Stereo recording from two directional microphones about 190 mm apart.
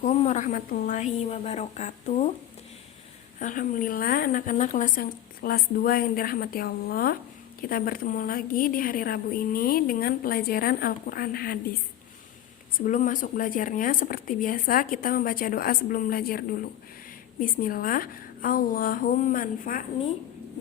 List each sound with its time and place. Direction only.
0.0 s a woman's voice: 35° left (ahead or behind)
3.3 s a woman's voice: 45° left (ahead or behind)
12.8 s a woman's voice: 40° left (ahead or behind)